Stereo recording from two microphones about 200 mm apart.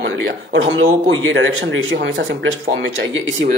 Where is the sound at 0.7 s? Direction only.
75° right (ahead or behind).